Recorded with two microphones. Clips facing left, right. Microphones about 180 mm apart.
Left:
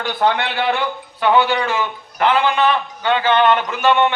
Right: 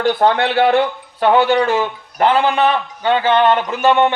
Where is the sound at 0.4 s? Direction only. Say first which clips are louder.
Right 6 dB; 45° right (ahead or behind).